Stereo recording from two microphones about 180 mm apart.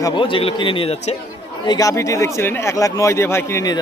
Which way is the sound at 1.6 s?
20° left (ahead or behind).